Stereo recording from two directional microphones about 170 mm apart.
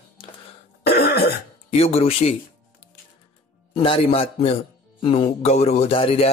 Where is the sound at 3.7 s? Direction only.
35° left (ahead or behind).